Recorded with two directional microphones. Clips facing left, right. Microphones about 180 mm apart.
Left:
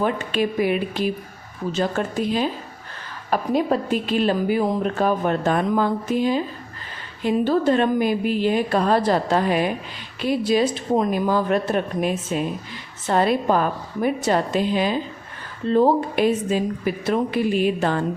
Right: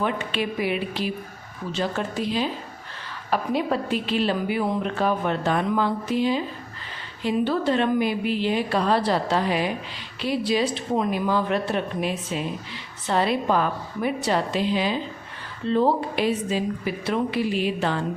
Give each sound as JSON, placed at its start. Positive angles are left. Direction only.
{"t": 0.0, "sound": "a woman's voice", "side_deg": 45}